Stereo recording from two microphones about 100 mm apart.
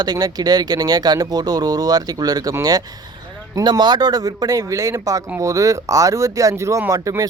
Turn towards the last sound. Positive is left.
turn(degrees=-35)  # may be behind; listen again after turning